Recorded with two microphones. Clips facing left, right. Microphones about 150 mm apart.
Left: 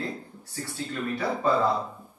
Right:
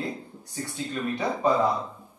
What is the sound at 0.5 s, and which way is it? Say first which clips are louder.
A man's voice: right 1 dB; 20° right (ahead or behind).